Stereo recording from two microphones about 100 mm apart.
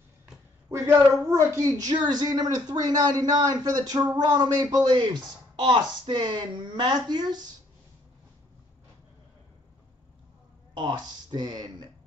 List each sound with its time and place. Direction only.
0.7 s a woman's voice: 30° right (ahead or behind); by 7.4 s 45° right (ahead or behind)
10.7 s speech: 50° right (ahead or behind)